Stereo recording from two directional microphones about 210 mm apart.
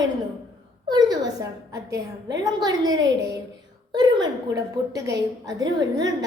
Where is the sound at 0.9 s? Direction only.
20° right (ahead or behind).